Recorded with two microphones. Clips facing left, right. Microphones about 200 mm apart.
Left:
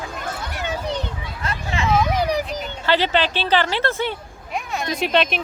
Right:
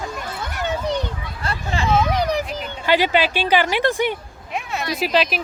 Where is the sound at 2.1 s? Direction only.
5° left (ahead or behind).